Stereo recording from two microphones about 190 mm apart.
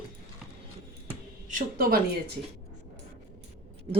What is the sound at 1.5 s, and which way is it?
Speech, 45° right (ahead or behind).